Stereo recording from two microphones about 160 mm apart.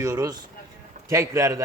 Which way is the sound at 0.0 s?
20° right (ahead or behind).